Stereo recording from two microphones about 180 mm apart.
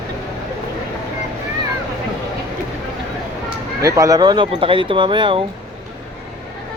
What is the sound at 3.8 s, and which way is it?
Speech, 20° right (ahead or behind).